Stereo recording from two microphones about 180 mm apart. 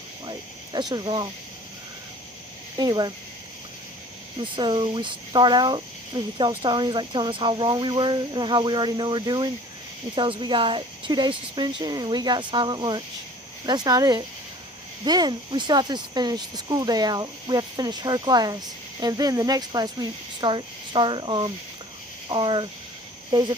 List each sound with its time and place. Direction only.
0.3 s speech: 25° right (ahead or behind)
2.7 s speech: 25° right (ahead or behind)
4.4 s speech: 25° right (ahead or behind)